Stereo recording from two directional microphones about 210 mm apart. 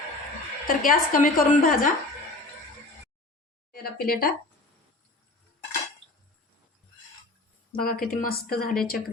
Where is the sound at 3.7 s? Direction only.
45° left (ahead or behind).